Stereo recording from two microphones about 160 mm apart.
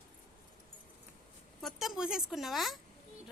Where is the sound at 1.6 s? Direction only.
Centre (ahead or behind).